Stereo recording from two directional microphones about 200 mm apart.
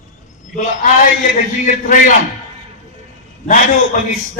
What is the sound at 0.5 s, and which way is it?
A man's voice, 40° left (ahead or behind).